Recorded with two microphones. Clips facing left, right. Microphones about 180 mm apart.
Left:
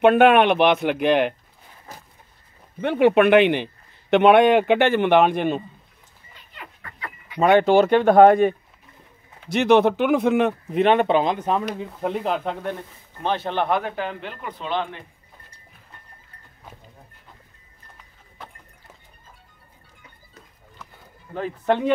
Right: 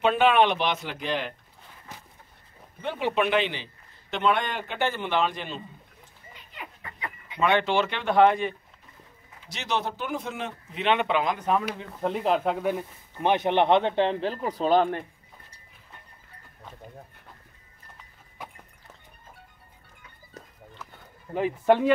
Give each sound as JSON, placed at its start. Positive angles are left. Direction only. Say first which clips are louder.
{"t": 0.0, "sound": "a man's voice", "louder": "left 6 dB", "side_deg": 60}
{"t": 2.8, "sound": "a man's voice", "louder": "left 10 dB", "side_deg": 65}
{"t": 6.5, "sound": "a sound", "louder": "even", "side_deg": -15}
{"t": 7.3, "sound": "speech", "louder": "left 8 dB", "side_deg": 40}
{"t": 9.5, "sound": "a man's voice", "louder": "left 14 dB", "side_deg": 60}
{"t": 11.8, "sound": "speech", "louder": "left 2 dB", "side_deg": 0}
{"t": 18.4, "sound": "horse", "louder": "even", "side_deg": -10}
{"t": 21.4, "sound": "speech", "louder": "right 1 dB", "side_deg": -10}